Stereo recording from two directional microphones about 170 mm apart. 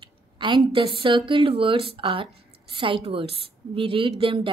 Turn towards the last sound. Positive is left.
turn(degrees=-30)  # may be behind; listen again after turning